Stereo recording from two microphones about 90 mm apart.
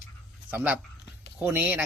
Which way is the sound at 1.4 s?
20° right (ahead or behind).